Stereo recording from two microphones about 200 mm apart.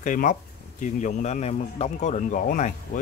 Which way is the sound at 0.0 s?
40° left (ahead or behind).